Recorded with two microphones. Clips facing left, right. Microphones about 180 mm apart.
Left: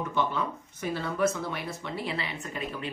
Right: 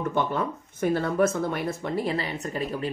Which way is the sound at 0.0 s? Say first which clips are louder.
Right 3 dB; 50° right (ahead or behind).